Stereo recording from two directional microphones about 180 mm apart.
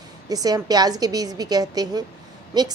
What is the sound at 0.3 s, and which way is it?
A woman's voice, 20° right (ahead or behind).